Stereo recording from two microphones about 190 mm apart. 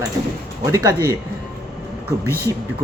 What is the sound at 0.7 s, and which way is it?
Speech, 15° right (ahead or behind).